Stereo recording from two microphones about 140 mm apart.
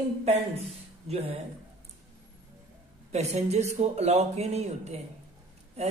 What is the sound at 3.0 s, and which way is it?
Speech, 50° right (ahead or behind).